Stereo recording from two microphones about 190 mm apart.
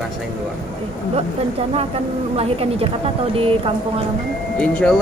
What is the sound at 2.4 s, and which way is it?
Speech, 30° right (ahead or behind).